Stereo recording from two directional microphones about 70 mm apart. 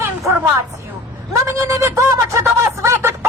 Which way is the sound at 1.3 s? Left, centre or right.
Right.